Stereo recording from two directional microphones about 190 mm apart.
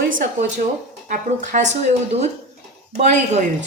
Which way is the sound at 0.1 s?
45° right (ahead or behind).